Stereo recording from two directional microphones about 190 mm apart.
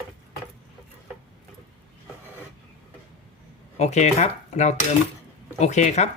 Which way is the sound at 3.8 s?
35° left (ahead or behind).